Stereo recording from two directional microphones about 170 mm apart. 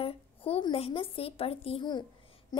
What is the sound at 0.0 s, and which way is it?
A woman's voice, 35° left (ahead or behind).